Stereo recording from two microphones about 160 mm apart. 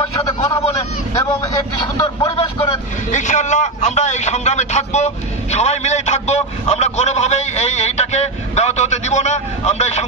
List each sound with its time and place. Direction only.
0.2 s a sound: 25° left (ahead or behind)
2.0 s speech: 25° left (ahead or behind)
3.1 s a man's voice: 50° left (ahead or behind)